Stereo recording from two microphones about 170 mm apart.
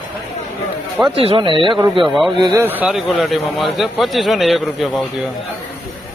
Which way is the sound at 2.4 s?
15° right (ahead or behind).